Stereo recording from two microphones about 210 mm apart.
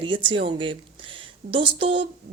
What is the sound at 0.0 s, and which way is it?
Speech, 25° right (ahead or behind).